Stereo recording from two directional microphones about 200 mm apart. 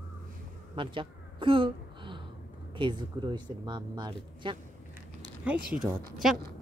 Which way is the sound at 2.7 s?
20° right (ahead or behind).